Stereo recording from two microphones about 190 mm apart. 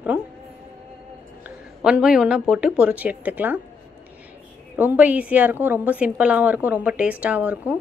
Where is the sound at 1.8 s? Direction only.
5° right (ahead or behind).